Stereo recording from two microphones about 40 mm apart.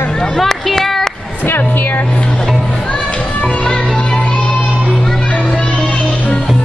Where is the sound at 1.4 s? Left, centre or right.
Left.